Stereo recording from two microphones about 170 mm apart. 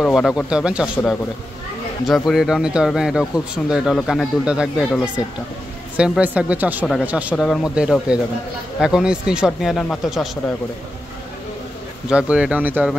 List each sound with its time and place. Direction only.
0.0 s speech: centre (ahead or behind)
12.1 s speech: 5° right (ahead or behind)